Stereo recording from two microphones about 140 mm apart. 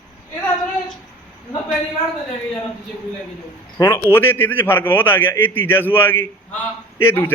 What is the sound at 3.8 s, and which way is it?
A man's voice, 20° left (ahead or behind).